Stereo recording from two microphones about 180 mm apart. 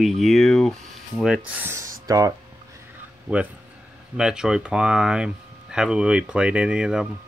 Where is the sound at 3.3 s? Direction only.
10° right (ahead or behind).